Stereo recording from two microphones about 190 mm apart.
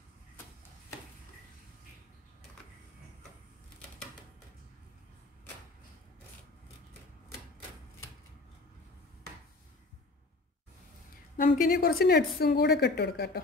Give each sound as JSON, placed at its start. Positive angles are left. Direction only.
{"t": 11.3, "sound": "speech", "side_deg": 45}